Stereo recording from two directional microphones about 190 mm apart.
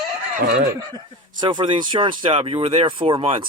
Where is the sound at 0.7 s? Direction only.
20° right (ahead or behind).